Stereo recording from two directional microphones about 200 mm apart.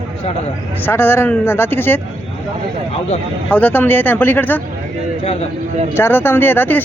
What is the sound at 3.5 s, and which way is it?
Speech, 10° left (ahead or behind).